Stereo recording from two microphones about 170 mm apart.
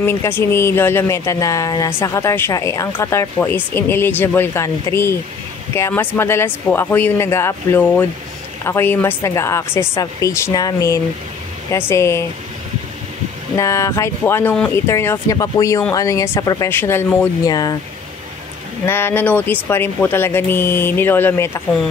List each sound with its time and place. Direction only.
0.0 s speech: 15° left (ahead or behind)
13.6 s speech: 15° left (ahead or behind)
17.5 s speech: 25° left (ahead or behind)
18.9 s speech: 15° left (ahead or behind)